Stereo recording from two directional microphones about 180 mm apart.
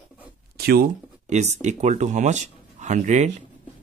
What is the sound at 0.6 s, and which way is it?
Speech, 55° right (ahead or behind).